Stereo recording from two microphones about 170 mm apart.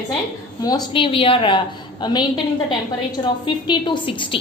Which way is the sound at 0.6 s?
25° left (ahead or behind).